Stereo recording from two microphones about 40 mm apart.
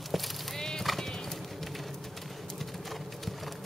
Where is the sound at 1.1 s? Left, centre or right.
Centre.